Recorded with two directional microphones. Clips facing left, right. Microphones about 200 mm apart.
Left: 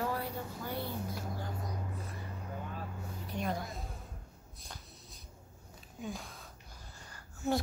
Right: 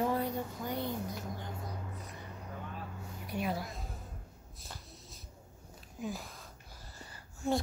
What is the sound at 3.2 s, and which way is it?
Speech, 5° right (ahead or behind).